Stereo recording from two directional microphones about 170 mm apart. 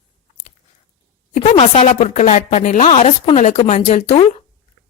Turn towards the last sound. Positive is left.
turn(degrees=35)  # may be behind; listen again after turning